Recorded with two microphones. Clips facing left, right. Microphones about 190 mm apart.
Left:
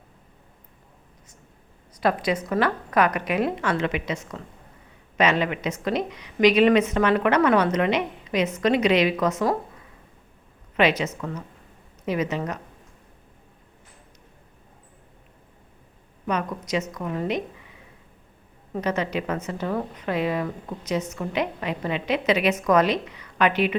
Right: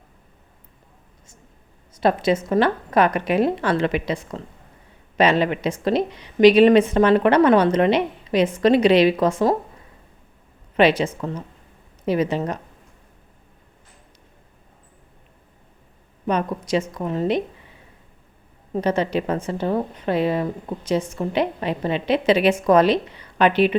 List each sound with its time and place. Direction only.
2.0 s a woman's voice: 25° right (ahead or behind)
10.8 s a woman's voice: 30° right (ahead or behind)
16.2 s a woman's voice: 30° right (ahead or behind)
18.7 s a woman's voice: 30° right (ahead or behind)